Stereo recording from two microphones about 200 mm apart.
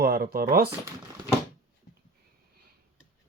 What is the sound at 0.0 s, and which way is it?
Speech, 50° right (ahead or behind).